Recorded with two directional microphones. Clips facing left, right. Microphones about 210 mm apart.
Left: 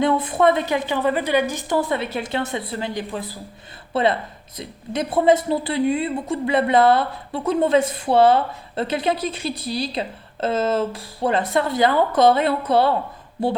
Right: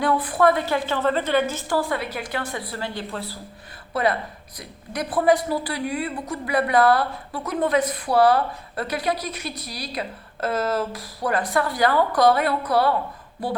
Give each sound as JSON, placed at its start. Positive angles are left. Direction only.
{"t": 0.0, "sound": "a woman's voice", "side_deg": 25}